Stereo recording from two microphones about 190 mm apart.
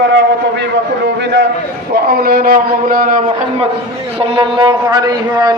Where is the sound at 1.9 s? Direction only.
55° right (ahead or behind).